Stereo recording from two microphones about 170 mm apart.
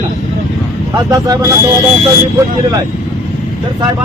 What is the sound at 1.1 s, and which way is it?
Speech, 20° right (ahead or behind).